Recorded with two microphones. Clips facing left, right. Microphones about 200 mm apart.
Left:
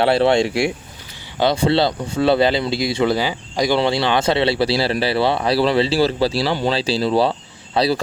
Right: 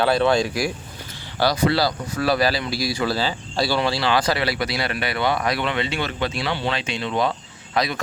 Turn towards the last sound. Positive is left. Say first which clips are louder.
# left 6 dB
turn(degrees=30)  # may be behind; listen again after turning